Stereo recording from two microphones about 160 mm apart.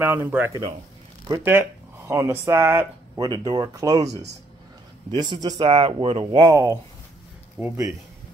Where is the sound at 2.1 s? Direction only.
15° right (ahead or behind).